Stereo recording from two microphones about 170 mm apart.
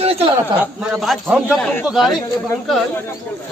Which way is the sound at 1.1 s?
5° right (ahead or behind).